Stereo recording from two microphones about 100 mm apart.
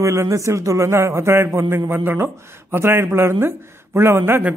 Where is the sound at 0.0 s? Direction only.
30° right (ahead or behind).